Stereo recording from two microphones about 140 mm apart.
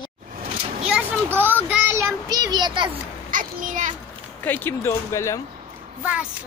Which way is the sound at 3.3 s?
70° right (ahead or behind).